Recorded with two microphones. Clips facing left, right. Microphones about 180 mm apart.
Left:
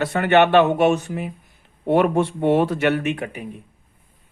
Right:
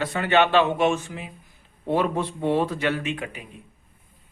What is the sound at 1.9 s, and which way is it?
Speech, 70° left (ahead or behind).